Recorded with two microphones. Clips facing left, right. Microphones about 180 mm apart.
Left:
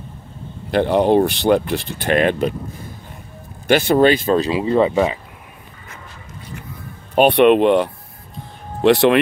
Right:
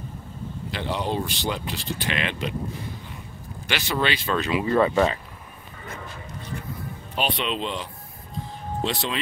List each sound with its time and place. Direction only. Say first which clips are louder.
0.7 s speech: left 13 dB; 55° left (ahead or behind)
3.6 s speech: left 13 dB; 50° left (ahead or behind)
4.4 s speech: left 5 dB; 30° left (ahead or behind); by 5.2 s 15° left (ahead or behind)
7.2 s speech: left 15 dB; 60° left (ahead or behind)